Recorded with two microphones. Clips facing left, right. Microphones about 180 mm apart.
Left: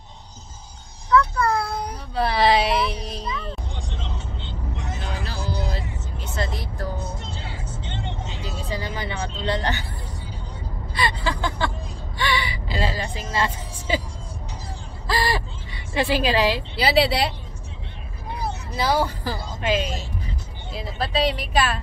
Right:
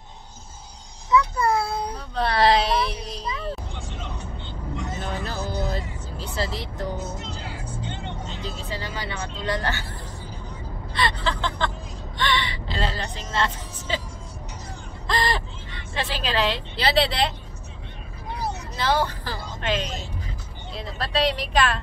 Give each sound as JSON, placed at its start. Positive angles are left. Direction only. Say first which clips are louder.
{"t": 1.5, "sound": "child singing", "louder": "right 1 dB", "side_deg": -5}
{"t": 2.1, "sound": "a sound", "louder": "left 1 dB", "side_deg": 5}
{"t": 4.0, "sound": "vehicle", "louder": "left 1 dB", "side_deg": 25}
{"t": 5.0, "sound": "music", "louder": "left 1 dB", "side_deg": -45}
{"t": 6.1, "sound": "vehicle", "louder": "right 1 dB", "side_deg": -30}
{"t": 7.2, "sound": "music", "louder": "even", "side_deg": 25}
{"t": 8.3, "sound": "vehicle", "louder": "left 2 dB", "side_deg": 10}
{"t": 11.0, "sound": "speech", "louder": "left 1 dB", "side_deg": 10}
{"t": 12.2, "sound": "gasp", "louder": "even", "side_deg": 10}
{"t": 15.0, "sound": "a sound", "louder": "left 1 dB", "side_deg": 10}
{"t": 18.8, "sound": "a woman's voice", "louder": "left 2 dB", "side_deg": 10}